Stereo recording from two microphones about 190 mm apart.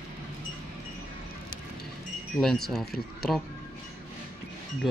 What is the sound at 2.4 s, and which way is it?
Speech, centre (ahead or behind).